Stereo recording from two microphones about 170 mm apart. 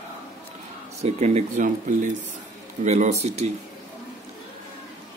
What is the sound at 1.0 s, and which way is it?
Speech, 40° right (ahead or behind).